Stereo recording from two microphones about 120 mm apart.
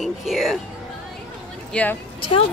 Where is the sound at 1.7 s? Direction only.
10° left (ahead or behind).